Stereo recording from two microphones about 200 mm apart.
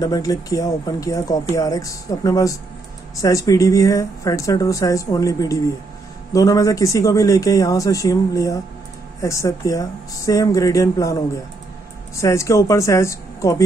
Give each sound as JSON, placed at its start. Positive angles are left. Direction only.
{"t": 0.0, "sound": "speech", "side_deg": 15}